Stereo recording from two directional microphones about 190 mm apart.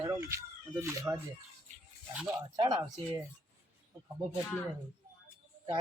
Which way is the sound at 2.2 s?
20° right (ahead or behind).